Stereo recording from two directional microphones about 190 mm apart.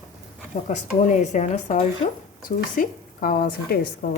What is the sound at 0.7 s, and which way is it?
Speech, 40° left (ahead or behind).